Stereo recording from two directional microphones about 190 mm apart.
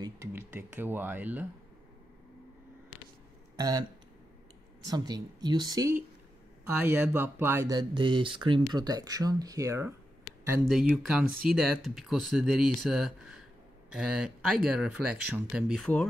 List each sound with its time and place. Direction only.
0.0 s speech: 15° right (ahead or behind)
3.5 s speech: 20° right (ahead or behind)
4.8 s speech: 20° right (ahead or behind)
10.7 s speech: centre (ahead or behind)